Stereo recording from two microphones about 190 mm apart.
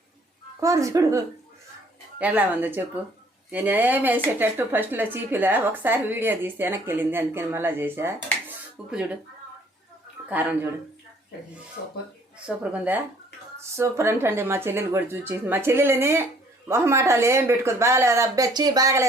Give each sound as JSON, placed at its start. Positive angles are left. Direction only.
{"t": 0.6, "sound": "speech", "side_deg": -15}
{"t": 10.2, "sound": "speech", "side_deg": -5}
{"t": 12.5, "sound": "speech", "side_deg": -5}